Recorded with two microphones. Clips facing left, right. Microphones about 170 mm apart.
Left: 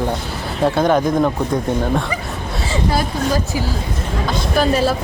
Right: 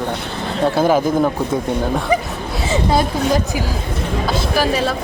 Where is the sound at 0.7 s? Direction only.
5° right (ahead or behind).